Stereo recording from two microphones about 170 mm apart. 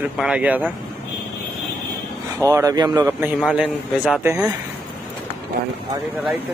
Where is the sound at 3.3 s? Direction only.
Centre (ahead or behind).